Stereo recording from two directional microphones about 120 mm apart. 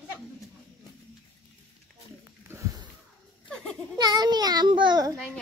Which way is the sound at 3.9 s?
35° right (ahead or behind).